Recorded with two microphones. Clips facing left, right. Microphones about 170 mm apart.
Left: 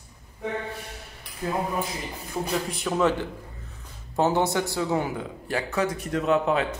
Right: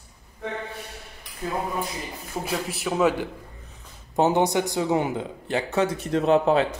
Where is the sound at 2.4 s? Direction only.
5° right (ahead or behind); by 6.7 s 30° right (ahead or behind).